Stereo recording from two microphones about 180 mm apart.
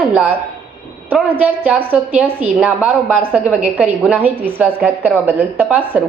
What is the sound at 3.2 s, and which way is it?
A woman's voice, 10° right (ahead or behind).